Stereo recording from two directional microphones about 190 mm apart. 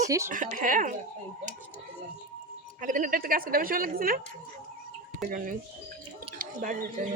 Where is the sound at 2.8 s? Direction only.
45° right (ahead or behind).